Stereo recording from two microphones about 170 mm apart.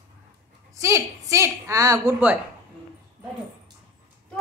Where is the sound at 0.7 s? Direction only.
15° right (ahead or behind).